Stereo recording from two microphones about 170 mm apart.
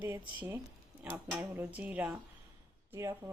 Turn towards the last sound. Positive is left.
turn(degrees=-15)  # may be behind; listen again after turning